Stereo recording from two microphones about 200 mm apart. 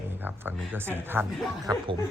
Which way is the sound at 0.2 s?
10° right (ahead or behind).